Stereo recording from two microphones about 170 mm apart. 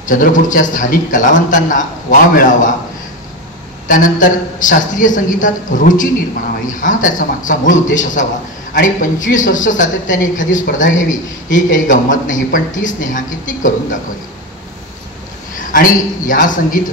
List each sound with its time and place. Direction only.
0.0 s speech: 50° left (ahead or behind)
3.8 s speech: 50° left (ahead or behind)
15.7 s speech: 50° left (ahead or behind)